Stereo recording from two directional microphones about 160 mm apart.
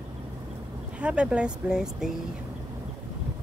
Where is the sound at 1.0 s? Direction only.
5° right (ahead or behind).